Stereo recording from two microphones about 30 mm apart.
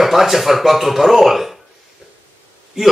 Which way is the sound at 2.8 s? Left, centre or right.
Centre.